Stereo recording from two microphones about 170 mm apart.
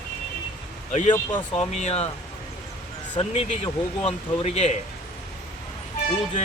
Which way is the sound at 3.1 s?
40° left (ahead or behind).